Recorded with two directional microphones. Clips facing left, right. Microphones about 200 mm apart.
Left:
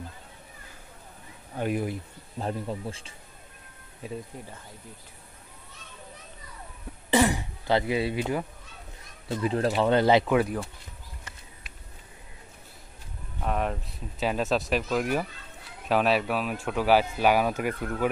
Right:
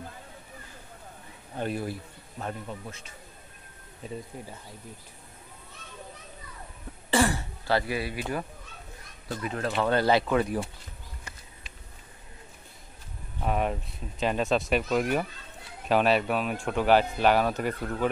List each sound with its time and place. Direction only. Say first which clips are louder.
1.6 s speech: left 3 dB; 15° left (ahead or behind)
2.4 s speech: left 5 dB; 30° left (ahead or behind)
4.0 s speech: left 2 dB; 5° left (ahead or behind)
7.1 s throat clearing: left 2 dB; 15° left (ahead or behind)
9.3 s speech: left 6 dB; 30° left (ahead or behind)
9.8 s speech: left 2 dB; 20° left (ahead or behind)
10.2 s speech: left 2 dB; 5° left (ahead or behind)
13.4 s speech: right 1 dB; 5° right (ahead or behind)